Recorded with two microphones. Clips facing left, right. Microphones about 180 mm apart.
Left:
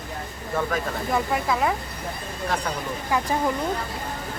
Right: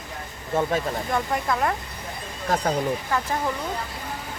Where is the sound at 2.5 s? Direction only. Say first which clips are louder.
Right 5 dB; 35° right (ahead or behind).